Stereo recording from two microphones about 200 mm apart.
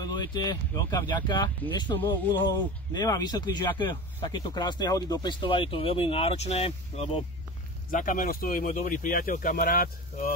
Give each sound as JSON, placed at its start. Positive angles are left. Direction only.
{"t": 0.0, "sound": "speech", "side_deg": 20}
{"t": 2.0, "sound": "speech", "side_deg": 10}
{"t": 7.9, "sound": "speech", "side_deg": 40}